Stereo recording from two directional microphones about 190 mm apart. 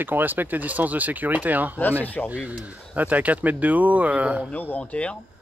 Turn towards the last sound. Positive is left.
turn(degrees=5)  # may be behind; listen again after turning